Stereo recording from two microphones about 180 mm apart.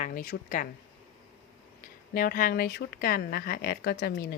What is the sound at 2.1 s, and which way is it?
Speech, 50° left (ahead or behind).